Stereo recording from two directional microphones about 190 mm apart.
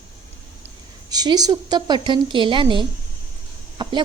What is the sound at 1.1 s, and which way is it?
A woman's voice, 20° right (ahead or behind).